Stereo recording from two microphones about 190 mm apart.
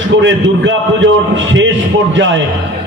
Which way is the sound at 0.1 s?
75° right (ahead or behind).